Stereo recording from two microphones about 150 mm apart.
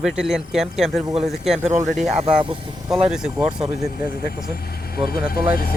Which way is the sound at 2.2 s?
35° right (ahead or behind).